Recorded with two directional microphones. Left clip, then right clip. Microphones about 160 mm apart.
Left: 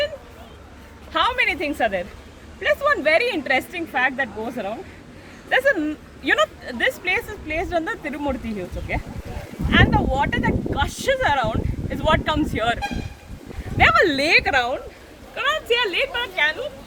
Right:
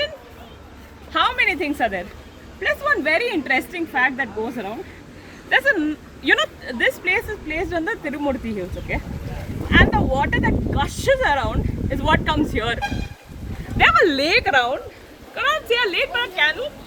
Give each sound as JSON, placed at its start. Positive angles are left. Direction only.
{"t": 1.1, "sound": "a woman's voice", "side_deg": 45}
{"t": 5.5, "sound": "speech", "side_deg": 60}
{"t": 6.7, "sound": "a woman's voice", "side_deg": 40}
{"t": 13.7, "sound": "speech", "side_deg": 60}
{"t": 15.4, "sound": "speech", "side_deg": 15}